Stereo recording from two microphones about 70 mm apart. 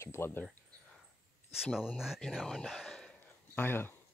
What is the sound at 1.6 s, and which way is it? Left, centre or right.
Speech, centre.